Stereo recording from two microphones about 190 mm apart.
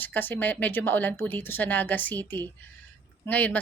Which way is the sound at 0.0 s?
10° left (ahead or behind).